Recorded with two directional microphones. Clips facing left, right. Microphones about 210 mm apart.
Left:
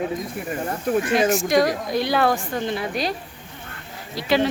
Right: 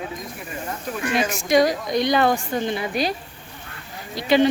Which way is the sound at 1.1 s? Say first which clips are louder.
Right 1 dB; centre (ahead or behind).